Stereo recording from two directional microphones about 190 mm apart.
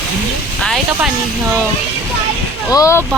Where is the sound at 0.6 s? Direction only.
Centre (ahead or behind).